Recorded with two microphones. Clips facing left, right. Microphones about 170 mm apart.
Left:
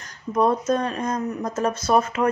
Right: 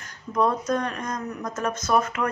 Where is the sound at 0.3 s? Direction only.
25° left (ahead or behind).